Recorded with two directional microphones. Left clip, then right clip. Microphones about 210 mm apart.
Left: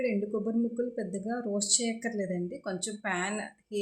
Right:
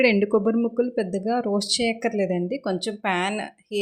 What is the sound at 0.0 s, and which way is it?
Speech, 40° right (ahead or behind).